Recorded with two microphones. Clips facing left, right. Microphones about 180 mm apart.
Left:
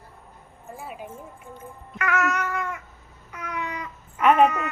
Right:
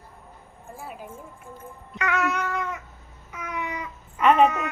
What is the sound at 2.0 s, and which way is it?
Cat, 15° right (ahead or behind).